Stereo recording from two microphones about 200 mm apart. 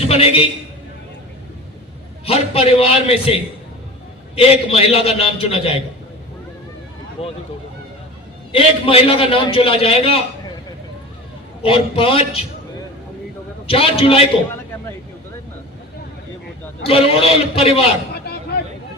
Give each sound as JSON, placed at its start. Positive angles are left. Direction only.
{"t": 0.1, "sound": "a man's voice", "side_deg": 30}
{"t": 2.2, "sound": "a man's voice", "side_deg": 30}
{"t": 4.4, "sound": "a man's voice", "side_deg": 30}
{"t": 7.2, "sound": "a man's voice", "side_deg": 30}
{"t": 8.5, "sound": "a man's voice", "side_deg": 30}
{"t": 11.6, "sound": "a man's voice", "side_deg": 25}
{"t": 13.7, "sound": "a man's voice", "side_deg": 30}
{"t": 16.8, "sound": "a man's voice", "side_deg": 30}
{"t": 18.3, "sound": "vehicle", "side_deg": 50}